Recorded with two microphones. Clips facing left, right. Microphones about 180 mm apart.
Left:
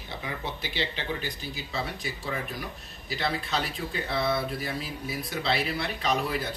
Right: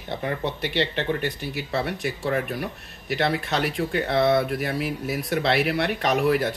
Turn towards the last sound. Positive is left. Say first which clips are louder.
# right 7 dB
turn(degrees=-75)  # may be behind; listen again after turning